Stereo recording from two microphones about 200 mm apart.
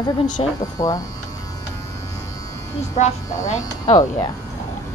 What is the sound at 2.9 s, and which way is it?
Speech, 35° left (ahead or behind).